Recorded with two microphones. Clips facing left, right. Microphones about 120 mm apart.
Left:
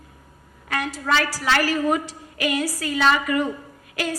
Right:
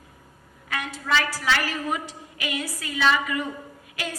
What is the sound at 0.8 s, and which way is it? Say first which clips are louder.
Speech: left 3 dB; 40° left (ahead or behind).